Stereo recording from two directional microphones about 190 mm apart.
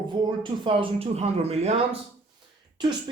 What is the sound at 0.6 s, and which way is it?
Speech, 30° right (ahead or behind).